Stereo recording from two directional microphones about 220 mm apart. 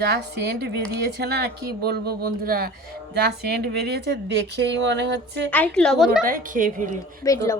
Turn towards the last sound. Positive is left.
turn(degrees=15)  # may be behind; listen again after turning